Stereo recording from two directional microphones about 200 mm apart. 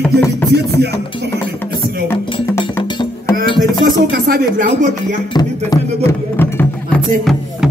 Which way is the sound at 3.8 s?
45° right (ahead or behind).